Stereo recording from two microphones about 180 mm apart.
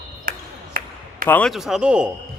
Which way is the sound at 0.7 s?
50° right (ahead or behind).